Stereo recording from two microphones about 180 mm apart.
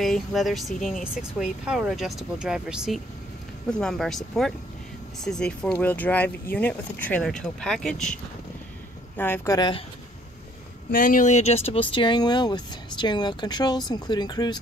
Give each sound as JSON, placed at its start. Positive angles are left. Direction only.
{"t": 0.0, "sound": "speech", "side_deg": 0}
{"t": 5.2, "sound": "speech", "side_deg": 5}
{"t": 9.6, "sound": "speech", "side_deg": 25}
{"t": 10.9, "sound": "speech", "side_deg": 50}